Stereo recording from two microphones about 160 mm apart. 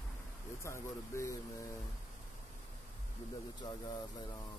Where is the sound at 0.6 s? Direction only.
15° left (ahead or behind).